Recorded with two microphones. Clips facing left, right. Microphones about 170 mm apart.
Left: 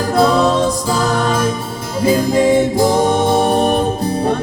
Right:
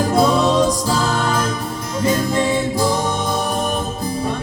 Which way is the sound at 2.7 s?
50° left (ahead or behind).